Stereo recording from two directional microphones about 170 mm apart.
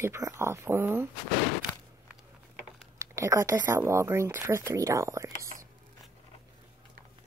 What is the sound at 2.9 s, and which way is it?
Speech, 15° right (ahead or behind).